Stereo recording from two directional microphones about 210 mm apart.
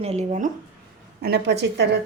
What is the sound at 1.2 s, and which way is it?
Speech, 50° right (ahead or behind).